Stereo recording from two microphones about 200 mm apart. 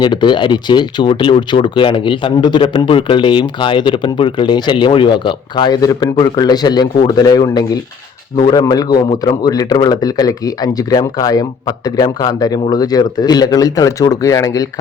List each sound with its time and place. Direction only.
0.0 s speech: 20° left (ahead or behind)